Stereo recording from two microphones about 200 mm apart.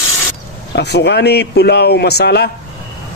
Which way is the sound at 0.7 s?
60° left (ahead or behind).